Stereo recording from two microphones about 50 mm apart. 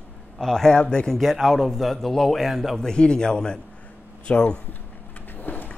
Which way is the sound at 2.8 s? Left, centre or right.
Centre.